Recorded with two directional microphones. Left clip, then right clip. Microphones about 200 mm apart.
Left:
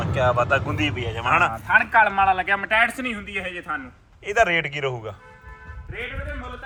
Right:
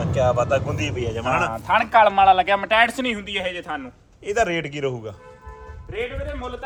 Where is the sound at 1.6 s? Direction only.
50° right (ahead or behind).